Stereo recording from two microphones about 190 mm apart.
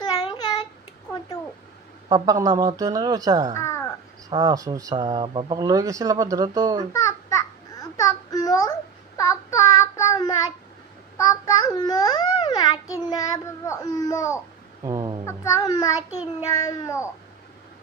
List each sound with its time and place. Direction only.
0.0 s child singing: 20° left (ahead or behind)
2.0 s speech: 20° right (ahead or behind)
3.5 s a sound: 15° left (ahead or behind)
4.3 s speech: 20° right (ahead or behind)
6.9 s babbling: 15° left (ahead or behind)
11.4 s a sound: 20° left (ahead or behind)
12.9 s a child's voice: 20° left (ahead or behind)
14.9 s speech: 20° right (ahead or behind)
15.2 s a child's voice: 20° left (ahead or behind)